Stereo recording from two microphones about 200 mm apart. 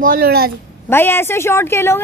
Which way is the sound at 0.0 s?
45° right (ahead or behind).